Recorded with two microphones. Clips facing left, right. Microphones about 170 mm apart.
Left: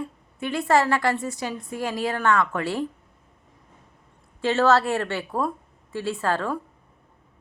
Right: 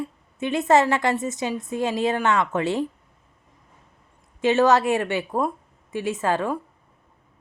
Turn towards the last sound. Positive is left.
turn(degrees=-15)  # may be behind; listen again after turning